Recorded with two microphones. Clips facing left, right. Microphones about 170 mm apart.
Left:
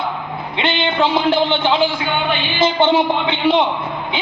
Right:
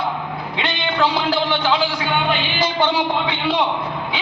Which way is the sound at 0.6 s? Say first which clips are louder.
Left 3 dB; 20° left (ahead or behind).